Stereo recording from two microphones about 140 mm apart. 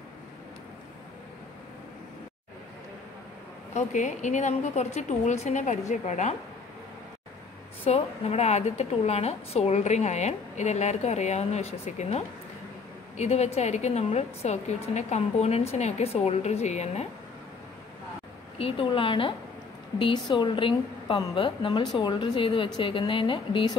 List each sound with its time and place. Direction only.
3.7 s a woman's voice: 60° left (ahead or behind)
7.8 s a woman's voice: 45° left (ahead or behind)
13.2 s a woman's voice: 50° left (ahead or behind)
18.6 s a woman's voice: 40° left (ahead or behind)